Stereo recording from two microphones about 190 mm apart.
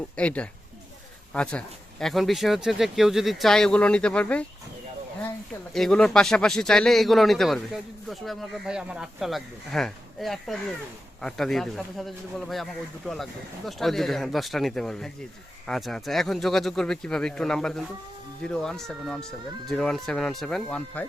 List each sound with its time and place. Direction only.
0.2 s speech: 5° left (ahead or behind)
5.7 s speech: 5° left (ahead or behind)
13.7 s speech: centre (ahead or behind)